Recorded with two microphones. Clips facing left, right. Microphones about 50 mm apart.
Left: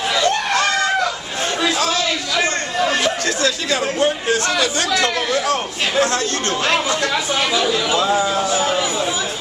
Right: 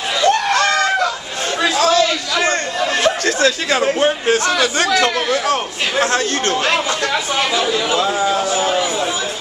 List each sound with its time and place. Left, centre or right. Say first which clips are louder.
3.0 s a sound: right 4 dB; right
4.0 s speech: right 2 dB; right
7.5 s speech: even; centre
8.4 s speech: right 1 dB; centre